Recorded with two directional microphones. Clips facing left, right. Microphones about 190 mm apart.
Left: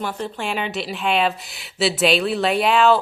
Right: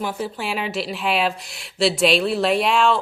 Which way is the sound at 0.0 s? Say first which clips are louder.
Even; 5° right (ahead or behind).